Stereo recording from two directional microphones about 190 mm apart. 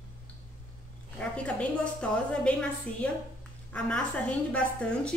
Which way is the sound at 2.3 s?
5° left (ahead or behind).